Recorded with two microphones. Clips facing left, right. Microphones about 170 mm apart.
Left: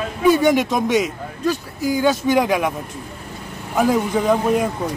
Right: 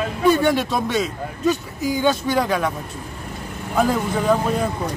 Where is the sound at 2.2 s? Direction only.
15° left (ahead or behind).